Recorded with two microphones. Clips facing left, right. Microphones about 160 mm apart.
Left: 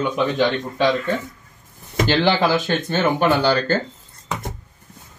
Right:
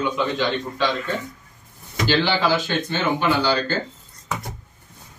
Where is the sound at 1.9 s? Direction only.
55° left (ahead or behind).